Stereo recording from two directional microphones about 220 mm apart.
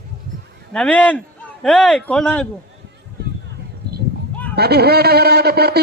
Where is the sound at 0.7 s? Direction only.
5° left (ahead or behind).